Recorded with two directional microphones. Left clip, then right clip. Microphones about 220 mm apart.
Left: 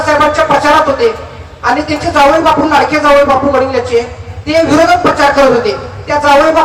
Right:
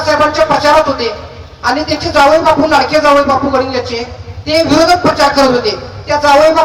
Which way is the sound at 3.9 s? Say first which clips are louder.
Left 8 dB; 45° right (ahead or behind).